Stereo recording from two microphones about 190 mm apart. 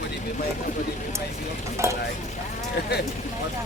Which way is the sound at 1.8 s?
15° right (ahead or behind).